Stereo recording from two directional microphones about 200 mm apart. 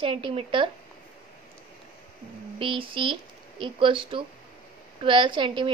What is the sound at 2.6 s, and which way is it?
A woman's voice, 25° right (ahead or behind).